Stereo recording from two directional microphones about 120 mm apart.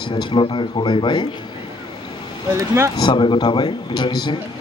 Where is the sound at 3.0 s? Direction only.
40° left (ahead or behind).